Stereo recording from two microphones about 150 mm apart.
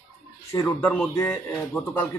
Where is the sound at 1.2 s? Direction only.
10° left (ahead or behind).